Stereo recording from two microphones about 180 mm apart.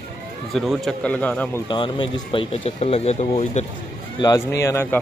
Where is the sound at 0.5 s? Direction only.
Centre (ahead or behind).